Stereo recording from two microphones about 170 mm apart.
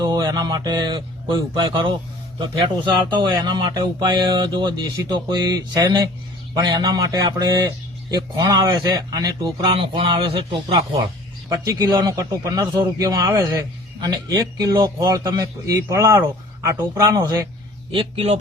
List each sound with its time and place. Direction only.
0.0 s a man's voice: 25° right (ahead or behind)
3.2 s a man's voice: 25° right (ahead or behind)
11.4 s a man's voice: 15° right (ahead or behind)
17.9 s speech: 35° right (ahead or behind)